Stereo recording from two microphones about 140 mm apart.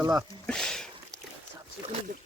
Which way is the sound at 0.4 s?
5° left (ahead or behind).